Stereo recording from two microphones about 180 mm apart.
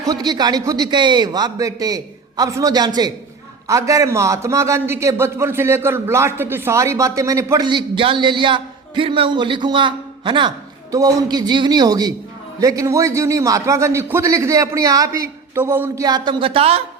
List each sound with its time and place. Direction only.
0.1 s a man's voice: 25° right (ahead or behind)